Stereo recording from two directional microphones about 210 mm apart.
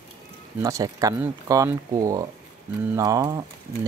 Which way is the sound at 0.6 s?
15° right (ahead or behind).